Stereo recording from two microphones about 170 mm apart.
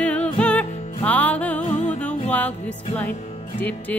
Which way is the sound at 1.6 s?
40° left (ahead or behind).